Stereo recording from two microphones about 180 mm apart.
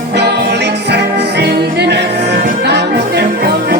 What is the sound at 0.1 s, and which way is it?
Music, 70° right (ahead or behind).